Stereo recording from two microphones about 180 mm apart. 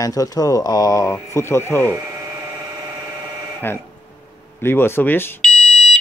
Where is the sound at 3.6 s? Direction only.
10° left (ahead or behind).